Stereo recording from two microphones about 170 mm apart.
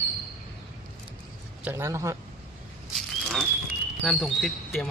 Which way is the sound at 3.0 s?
Centre (ahead or behind).